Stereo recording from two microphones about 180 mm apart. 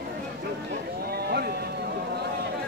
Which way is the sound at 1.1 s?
60° right (ahead or behind).